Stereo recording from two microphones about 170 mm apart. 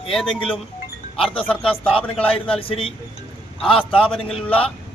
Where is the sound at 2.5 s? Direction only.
35° left (ahead or behind).